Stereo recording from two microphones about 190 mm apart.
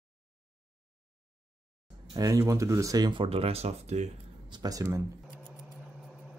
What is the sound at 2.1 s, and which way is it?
Speech, 15° right (ahead or behind).